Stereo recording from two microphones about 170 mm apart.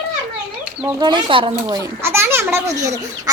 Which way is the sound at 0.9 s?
25° right (ahead or behind).